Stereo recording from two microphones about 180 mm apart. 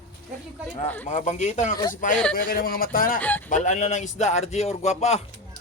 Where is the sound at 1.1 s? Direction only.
40° left (ahead or behind).